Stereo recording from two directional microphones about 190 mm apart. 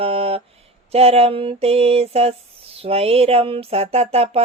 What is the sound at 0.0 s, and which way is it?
Mantra, 30° right (ahead or behind).